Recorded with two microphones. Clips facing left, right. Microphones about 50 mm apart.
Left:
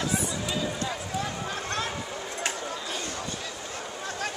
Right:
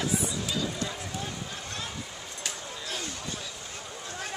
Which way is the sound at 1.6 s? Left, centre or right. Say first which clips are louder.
Left 9 dB; left.